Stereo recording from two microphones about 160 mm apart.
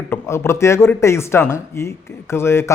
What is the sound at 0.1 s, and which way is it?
Speech, 15° left (ahead or behind).